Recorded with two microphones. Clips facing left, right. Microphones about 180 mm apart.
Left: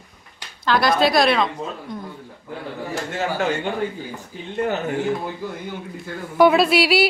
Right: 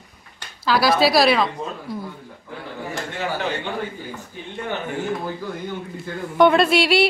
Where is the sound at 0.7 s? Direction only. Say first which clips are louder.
Even; 5° right (ahead or behind).